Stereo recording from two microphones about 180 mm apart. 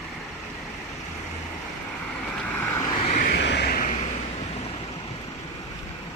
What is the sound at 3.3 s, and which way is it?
Vehicle, 70° left (ahead or behind).